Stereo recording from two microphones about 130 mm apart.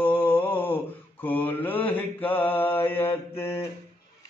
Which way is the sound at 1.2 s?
15° left (ahead or behind).